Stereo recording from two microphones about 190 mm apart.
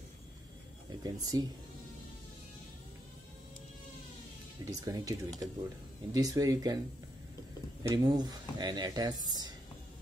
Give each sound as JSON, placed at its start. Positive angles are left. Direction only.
{"t": 1.0, "sound": "speech", "side_deg": -20}
{"t": 4.6, "sound": "speech", "side_deg": -20}
{"t": 7.9, "sound": "speech", "side_deg": -20}